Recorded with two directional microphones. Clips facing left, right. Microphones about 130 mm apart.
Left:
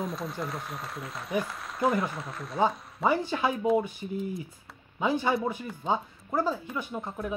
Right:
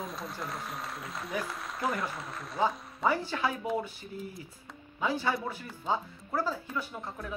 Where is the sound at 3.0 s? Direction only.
20° left (ahead or behind).